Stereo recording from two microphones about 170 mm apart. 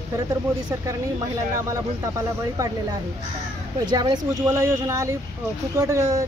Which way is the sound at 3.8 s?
25° right (ahead or behind).